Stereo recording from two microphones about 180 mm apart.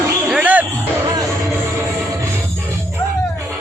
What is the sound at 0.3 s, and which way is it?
Music, 10° right (ahead or behind).